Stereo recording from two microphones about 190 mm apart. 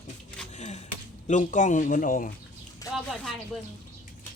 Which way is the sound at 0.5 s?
35° left (ahead or behind).